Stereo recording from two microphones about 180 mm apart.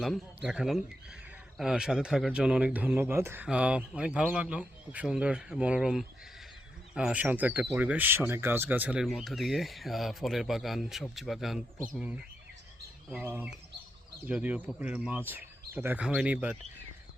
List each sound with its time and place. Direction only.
0.0 s speech: centre (ahead or behind)